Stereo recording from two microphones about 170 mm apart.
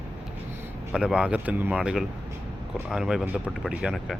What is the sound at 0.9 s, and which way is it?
Speech, 5° right (ahead or behind).